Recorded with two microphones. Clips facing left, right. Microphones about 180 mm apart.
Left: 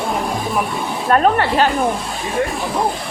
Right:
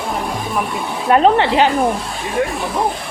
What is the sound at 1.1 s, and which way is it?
Speech, 15° right (ahead or behind).